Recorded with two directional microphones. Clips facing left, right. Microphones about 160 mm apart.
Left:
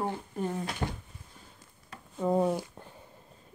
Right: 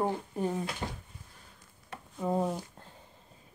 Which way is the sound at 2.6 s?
15° left (ahead or behind).